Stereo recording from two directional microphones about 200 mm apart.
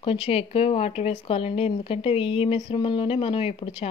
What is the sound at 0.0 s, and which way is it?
Speech, 30° left (ahead or behind).